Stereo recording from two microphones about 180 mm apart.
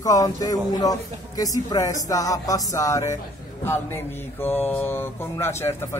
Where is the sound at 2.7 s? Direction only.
20° left (ahead or behind).